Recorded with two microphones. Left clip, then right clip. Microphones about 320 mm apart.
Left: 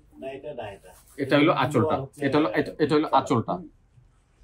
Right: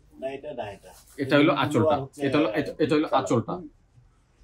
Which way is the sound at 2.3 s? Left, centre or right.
Centre.